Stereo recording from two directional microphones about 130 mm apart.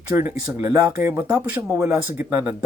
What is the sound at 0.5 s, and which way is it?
Speech, 15° right (ahead or behind).